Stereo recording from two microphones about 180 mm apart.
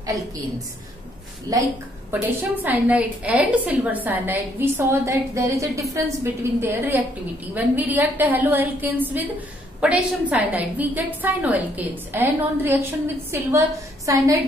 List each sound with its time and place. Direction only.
1.5 s a woman's voice: 20° right (ahead or behind)